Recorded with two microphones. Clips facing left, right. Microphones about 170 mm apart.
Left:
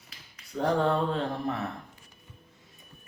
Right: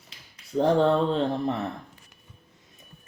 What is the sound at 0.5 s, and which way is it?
A man's voice, 25° right (ahead or behind).